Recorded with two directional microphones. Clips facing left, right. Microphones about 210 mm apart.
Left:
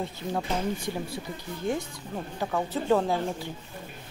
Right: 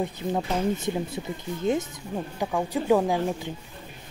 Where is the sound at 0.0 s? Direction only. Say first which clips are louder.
Right 4 dB; 20° right (ahead or behind).